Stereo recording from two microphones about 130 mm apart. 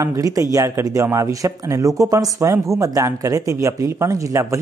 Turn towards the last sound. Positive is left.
turn(degrees=-25)  # may be behind; listen again after turning